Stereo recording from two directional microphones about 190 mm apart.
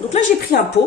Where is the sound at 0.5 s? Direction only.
55° left (ahead or behind).